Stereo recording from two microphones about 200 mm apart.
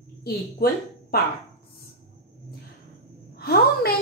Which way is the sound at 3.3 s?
50° left (ahead or behind).